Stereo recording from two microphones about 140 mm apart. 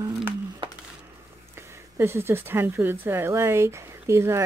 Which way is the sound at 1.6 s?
15° right (ahead or behind).